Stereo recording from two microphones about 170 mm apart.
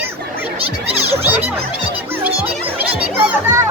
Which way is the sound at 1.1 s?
15° right (ahead or behind).